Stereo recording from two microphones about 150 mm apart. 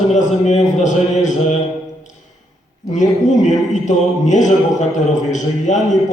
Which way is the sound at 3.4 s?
50° left (ahead or behind).